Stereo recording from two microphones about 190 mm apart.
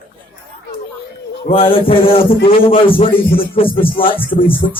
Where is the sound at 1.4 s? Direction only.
30° left (ahead or behind).